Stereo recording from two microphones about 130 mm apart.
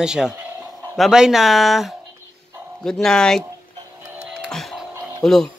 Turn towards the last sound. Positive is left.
turn(degrees=5)  # may be behind; listen again after turning